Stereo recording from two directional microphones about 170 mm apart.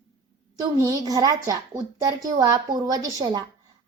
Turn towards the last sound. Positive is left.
turn(degrees=-20)  # may be behind; listen again after turning